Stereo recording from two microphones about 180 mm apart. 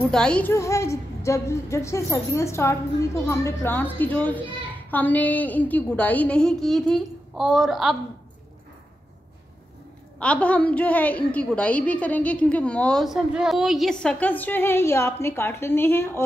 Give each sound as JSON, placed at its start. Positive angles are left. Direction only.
{"t": 0.1, "sound": "a woman's voice", "side_deg": 5}
{"t": 10.1, "sound": "a woman's voice", "side_deg": 5}